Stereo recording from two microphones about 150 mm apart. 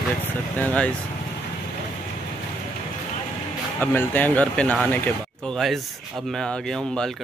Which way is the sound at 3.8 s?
15° left (ahead or behind).